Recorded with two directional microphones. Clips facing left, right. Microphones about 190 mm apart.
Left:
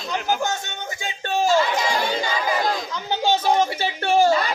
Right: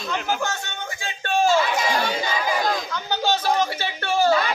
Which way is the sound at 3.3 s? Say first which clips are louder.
Left 3 dB; 20° left (ahead or behind).